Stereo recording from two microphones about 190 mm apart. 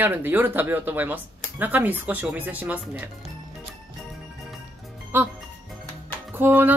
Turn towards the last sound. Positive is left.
turn(degrees=-10)  # may be behind; listen again after turning